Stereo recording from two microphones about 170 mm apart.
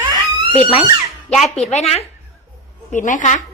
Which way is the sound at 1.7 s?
40° left (ahead or behind).